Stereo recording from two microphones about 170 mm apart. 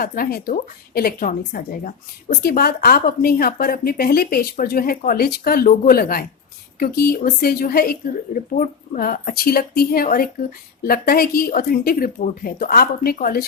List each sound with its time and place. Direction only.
0.0 s a woman's voice: 60° left (ahead or behind)